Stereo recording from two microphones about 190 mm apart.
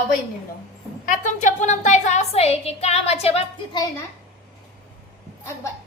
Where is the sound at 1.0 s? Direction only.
40° left (ahead or behind).